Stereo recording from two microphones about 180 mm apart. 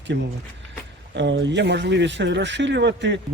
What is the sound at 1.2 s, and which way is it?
Speech, 80° right.